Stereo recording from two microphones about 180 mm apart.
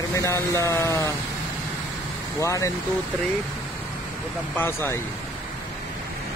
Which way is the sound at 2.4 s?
15° left (ahead or behind).